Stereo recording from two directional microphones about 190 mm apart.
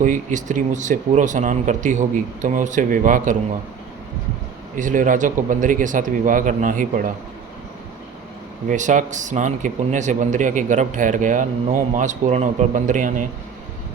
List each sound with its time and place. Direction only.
0.0 s speech: 40° right (ahead or behind)
4.8 s speech: 45° right (ahead or behind)
8.7 s speech: 40° right (ahead or behind)